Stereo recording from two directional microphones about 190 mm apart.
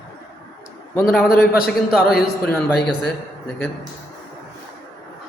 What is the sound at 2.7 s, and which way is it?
Speech, 60° left (ahead or behind).